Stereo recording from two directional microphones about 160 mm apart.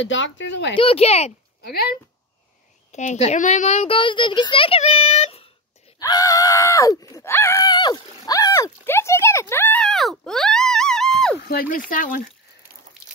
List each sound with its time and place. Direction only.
0.4 s speech: 90° left
0.7 s a child's voice: 35° left (ahead or behind)
1.6 s speech: 75° left (ahead or behind)
2.9 s a child's voice: 45° left (ahead or behind)
5.9 s screaming: 20° left (ahead or behind)
9.8 s a sound: centre (ahead or behind)
11.9 s speech: 55° left (ahead or behind)
13.0 s a sound: 5° right (ahead or behind)